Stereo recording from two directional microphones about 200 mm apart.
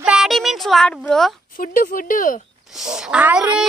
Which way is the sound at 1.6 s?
45° left (ahead or behind).